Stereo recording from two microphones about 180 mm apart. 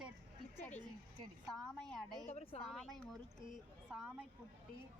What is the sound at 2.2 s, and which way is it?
Speech, 35° left (ahead or behind).